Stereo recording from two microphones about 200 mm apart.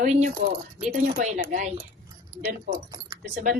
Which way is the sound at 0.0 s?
35° right (ahead or behind).